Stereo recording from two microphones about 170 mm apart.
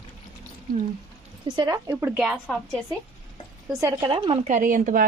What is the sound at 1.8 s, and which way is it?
Speech, 10° right (ahead or behind).